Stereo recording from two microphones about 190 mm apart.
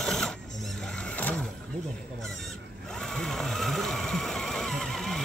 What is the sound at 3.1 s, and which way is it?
Vehicle, 5° left (ahead or behind).